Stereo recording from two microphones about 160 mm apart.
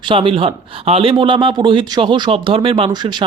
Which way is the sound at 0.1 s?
35° right (ahead or behind).